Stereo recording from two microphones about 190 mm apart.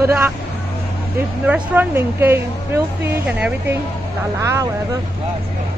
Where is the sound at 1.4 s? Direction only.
10° right (ahead or behind).